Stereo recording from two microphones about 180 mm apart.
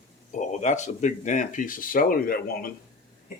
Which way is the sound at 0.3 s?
40° left (ahead or behind).